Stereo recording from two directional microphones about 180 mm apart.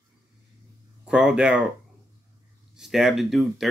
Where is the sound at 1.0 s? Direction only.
5° right (ahead or behind).